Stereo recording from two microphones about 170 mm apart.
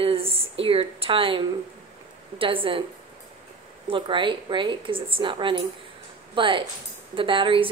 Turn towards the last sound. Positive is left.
turn(degrees=-30)  # may be behind; listen again after turning